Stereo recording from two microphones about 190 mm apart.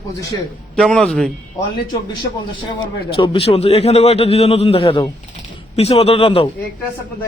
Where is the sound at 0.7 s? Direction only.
Centre (ahead or behind).